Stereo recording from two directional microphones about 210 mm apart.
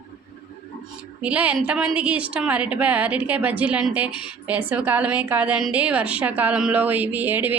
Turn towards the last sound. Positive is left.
turn(degrees=-10)  # may be behind; listen again after turning